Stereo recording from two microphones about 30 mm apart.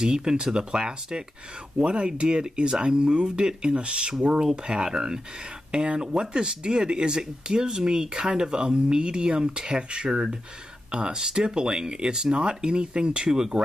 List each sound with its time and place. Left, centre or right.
0.0 s speech: right
1.8 s speech: right
10.0 s speech: centre
10.9 s speech: right
13.3 s speech: right